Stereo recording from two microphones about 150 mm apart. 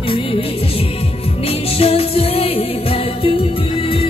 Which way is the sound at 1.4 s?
40° left (ahead or behind).